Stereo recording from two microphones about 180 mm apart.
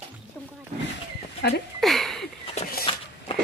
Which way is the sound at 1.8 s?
Centre (ahead or behind).